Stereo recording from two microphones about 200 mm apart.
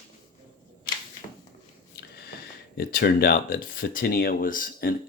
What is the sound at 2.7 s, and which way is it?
Speech, 50° left (ahead or behind).